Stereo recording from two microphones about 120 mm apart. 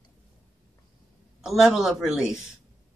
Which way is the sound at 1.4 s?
Centre (ahead or behind).